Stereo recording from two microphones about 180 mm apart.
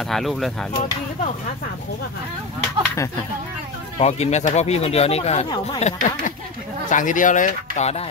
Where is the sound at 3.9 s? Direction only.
35° left (ahead or behind).